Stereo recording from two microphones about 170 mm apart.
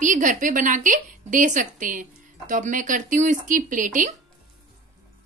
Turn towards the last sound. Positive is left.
turn(degrees=-50)  # may be behind; listen again after turning